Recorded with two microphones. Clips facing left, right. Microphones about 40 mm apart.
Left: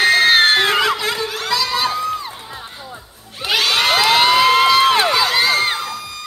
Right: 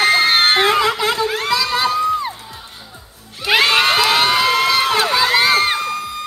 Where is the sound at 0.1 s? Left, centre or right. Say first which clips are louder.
Left 1 dB; centre.